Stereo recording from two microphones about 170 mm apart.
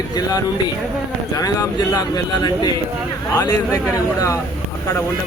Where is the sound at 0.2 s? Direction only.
20° left (ahead or behind).